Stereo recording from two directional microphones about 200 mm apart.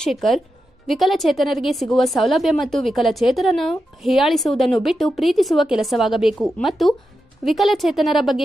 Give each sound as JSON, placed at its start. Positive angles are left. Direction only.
{"t": 0.0, "sound": "a woman's voice", "side_deg": 0}